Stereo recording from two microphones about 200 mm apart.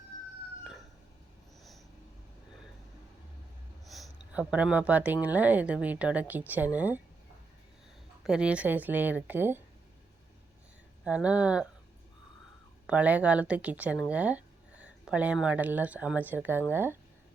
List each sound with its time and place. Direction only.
3.8 s a sound: centre (ahead or behind)
5.2 s speech: 10° right (ahead or behind)
8.2 s speech: 5° right (ahead or behind)
11.0 s speech: 5° right (ahead or behind)
12.9 s speech: 5° right (ahead or behind)